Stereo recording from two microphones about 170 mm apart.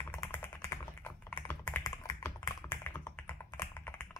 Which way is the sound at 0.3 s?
15° left (ahead or behind).